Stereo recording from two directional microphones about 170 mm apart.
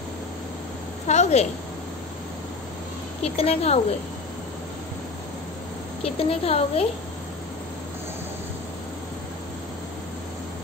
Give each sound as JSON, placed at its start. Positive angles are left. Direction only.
{"t": 1.0, "sound": "a woman's voice", "side_deg": 40}
{"t": 3.3, "sound": "a woman's voice", "side_deg": 35}
{"t": 6.0, "sound": "a woman's voice", "side_deg": 35}